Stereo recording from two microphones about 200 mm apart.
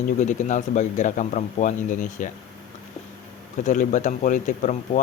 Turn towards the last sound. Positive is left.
turn(degrees=40)  # may be behind; listen again after turning